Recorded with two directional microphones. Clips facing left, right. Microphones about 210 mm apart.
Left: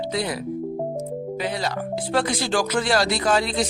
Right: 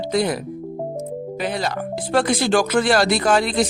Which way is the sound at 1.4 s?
50° right (ahead or behind).